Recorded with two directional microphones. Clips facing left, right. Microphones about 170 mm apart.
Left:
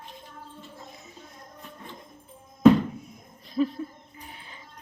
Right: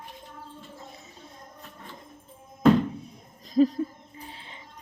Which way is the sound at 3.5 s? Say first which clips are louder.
Right 5 dB; 40° right (ahead or behind).